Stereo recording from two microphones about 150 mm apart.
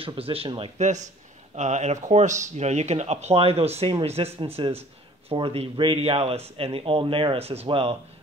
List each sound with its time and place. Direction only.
0.0 s speech: 40° right (ahead or behind)
0.7 s speech: 50° right (ahead or behind)